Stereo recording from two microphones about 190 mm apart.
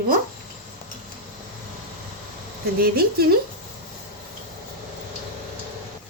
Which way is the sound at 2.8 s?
55° right (ahead or behind).